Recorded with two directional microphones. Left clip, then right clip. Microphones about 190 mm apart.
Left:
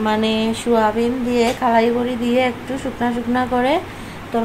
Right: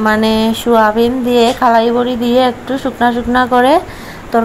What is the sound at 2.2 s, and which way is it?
Speech, 90° right.